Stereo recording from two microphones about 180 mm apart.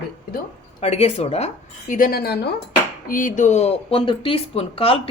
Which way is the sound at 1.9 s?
50° left (ahead or behind).